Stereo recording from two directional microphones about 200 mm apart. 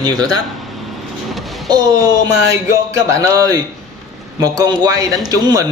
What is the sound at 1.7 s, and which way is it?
Speech, 20° right (ahead or behind).